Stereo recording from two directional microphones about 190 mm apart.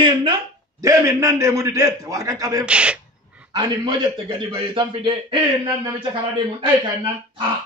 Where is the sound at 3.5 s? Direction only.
25° right (ahead or behind).